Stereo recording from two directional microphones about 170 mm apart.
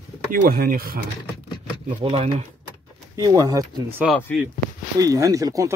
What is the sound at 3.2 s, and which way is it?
Speech, 20° right (ahead or behind).